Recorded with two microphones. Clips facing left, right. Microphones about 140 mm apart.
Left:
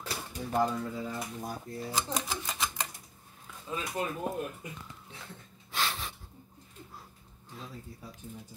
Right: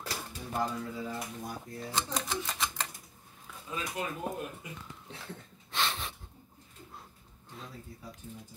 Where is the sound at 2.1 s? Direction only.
5° left (ahead or behind).